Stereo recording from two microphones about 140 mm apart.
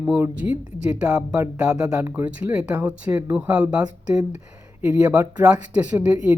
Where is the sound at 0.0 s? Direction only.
10° right (ahead or behind).